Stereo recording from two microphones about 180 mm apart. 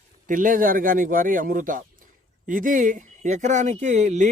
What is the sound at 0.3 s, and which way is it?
A man's voice, 50° right (ahead or behind).